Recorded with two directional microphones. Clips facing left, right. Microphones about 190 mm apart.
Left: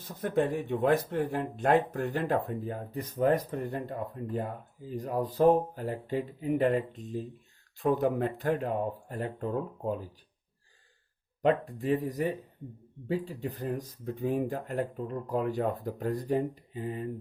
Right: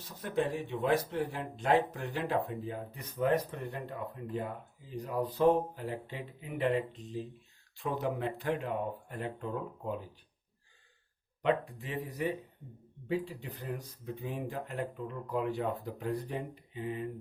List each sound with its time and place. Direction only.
0.2 s speech: 50° left (ahead or behind)
11.4 s speech: 40° left (ahead or behind)